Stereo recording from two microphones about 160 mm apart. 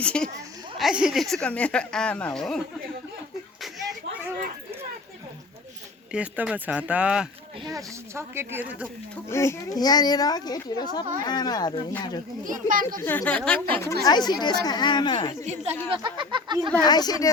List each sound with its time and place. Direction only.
0.0 s a woman's voice: 5° left (ahead or behind)
3.6 s slap: centre (ahead or behind)
6.1 s speech: 5° right (ahead or behind)
7.6 s speech: 20° right (ahead or behind)
9.3 s speech: 15° left (ahead or behind)
12.5 s a child's voice: 55° right (ahead or behind)
13.0 s a woman's voice: 10° left (ahead or behind)
14.0 s speech: 25° left (ahead or behind)
15.4 s a woman's voice: 40° right (ahead or behind)
15.9 s speech: 30° right (ahead or behind)
16.8 s speech: 25° left (ahead or behind)